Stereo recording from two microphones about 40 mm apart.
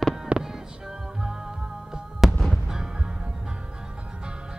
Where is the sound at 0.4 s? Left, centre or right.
Centre.